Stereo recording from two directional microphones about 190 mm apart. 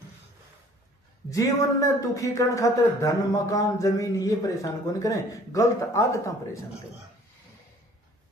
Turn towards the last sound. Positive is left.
turn(degrees=15)  # may be behind; listen again after turning